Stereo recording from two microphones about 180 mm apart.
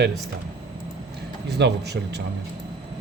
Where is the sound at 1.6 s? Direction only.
70° right (ahead or behind).